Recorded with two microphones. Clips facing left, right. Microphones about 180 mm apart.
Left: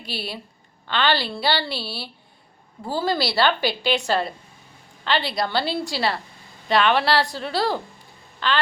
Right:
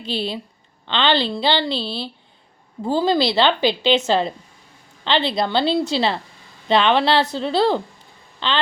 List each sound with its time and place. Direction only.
0.0 s a woman's voice: 20° right (ahead or behind)
2.8 s a woman's voice: 20° right (ahead or behind)